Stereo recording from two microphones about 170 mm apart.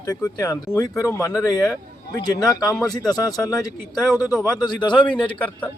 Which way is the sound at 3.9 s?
Centre (ahead or behind).